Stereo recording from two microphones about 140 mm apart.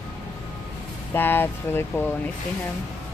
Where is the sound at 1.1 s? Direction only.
15° left (ahead or behind).